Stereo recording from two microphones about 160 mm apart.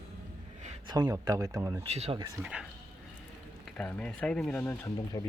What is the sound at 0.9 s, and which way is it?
Speech, 25° right (ahead or behind).